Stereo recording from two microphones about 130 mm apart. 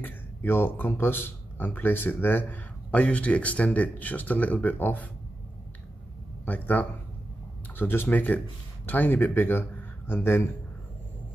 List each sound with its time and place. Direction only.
0.0 s a man's voice: 15° left (ahead or behind)
6.4 s a man's voice: 15° left (ahead or behind)